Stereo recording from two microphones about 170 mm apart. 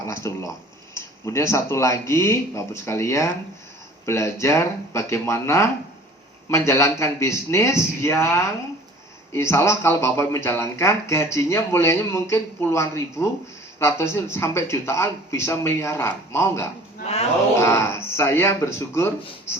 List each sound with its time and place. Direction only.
0.0 s speech: 15° left (ahead or behind)
17.0 s speech: 35° left (ahead or behind)
17.6 s speech: 15° left (ahead or behind)